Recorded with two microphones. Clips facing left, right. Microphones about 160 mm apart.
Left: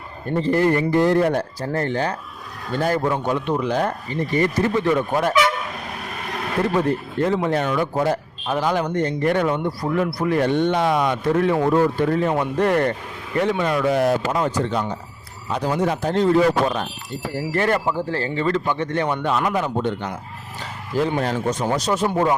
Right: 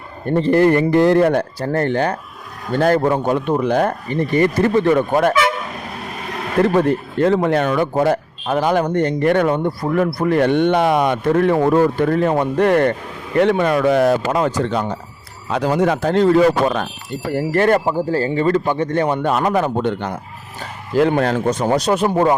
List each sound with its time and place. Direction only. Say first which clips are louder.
0.3 s speech: right 5 dB; 60° right (ahead or behind)
6.6 s speech: right 6 dB; 70° right (ahead or behind)
15.4 s a man's voice: right 5 dB; 85° right
17.3 s speech: right 6 dB; 55° right (ahead or behind)
17.9 s a man's voice: right 6 dB; 40° right (ahead or behind); by 20.1 s 65° right (ahead or behind)
21.2 s speech: right 5 dB; 65° right (ahead or behind)